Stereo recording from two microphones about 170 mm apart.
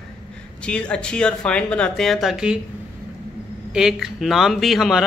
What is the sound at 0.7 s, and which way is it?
Speech, 5° left (ahead or behind).